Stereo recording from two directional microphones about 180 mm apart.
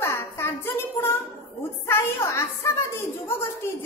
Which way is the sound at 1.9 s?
15° left (ahead or behind).